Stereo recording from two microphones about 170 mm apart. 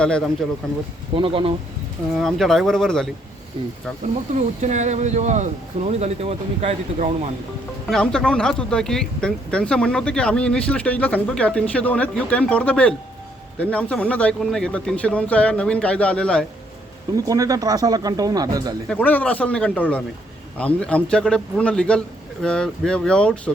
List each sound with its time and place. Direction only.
0.4 s speech: centre (ahead or behind)
1.1 s speech: 30° right (ahead or behind)
2.1 s speech: centre (ahead or behind)
3.6 s speech: 30° right (ahead or behind)
4.4 s speech: 45° right (ahead or behind)
7.9 s speech: 5° left (ahead or behind)
17.2 s speech: 20° right (ahead or behind)
18.9 s speech: 10° left (ahead or behind)